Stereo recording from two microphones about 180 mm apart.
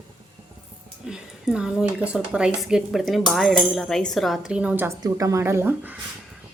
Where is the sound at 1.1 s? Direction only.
5° right (ahead or behind).